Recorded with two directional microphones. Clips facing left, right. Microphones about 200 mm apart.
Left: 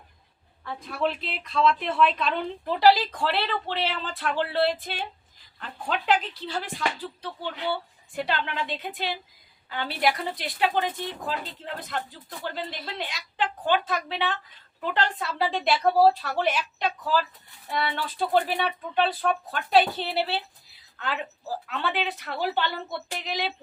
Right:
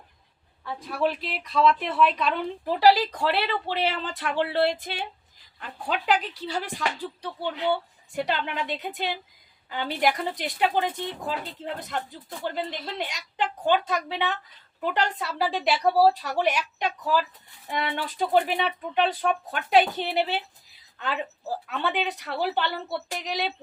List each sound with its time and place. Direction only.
0.6 s speech: 5° right (ahead or behind)